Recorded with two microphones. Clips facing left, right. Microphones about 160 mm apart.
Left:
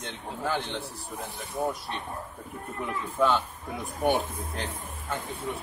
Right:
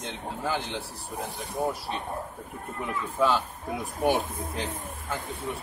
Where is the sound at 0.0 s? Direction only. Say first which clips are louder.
Right 1 dB; 5° right (ahead or behind).